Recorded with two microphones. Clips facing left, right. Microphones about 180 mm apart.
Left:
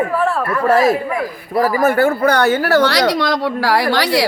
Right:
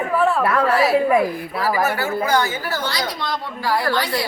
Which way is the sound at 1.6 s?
50° left (ahead or behind).